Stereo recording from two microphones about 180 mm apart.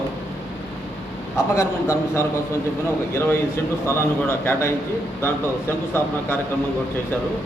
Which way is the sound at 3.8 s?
15° left (ahead or behind).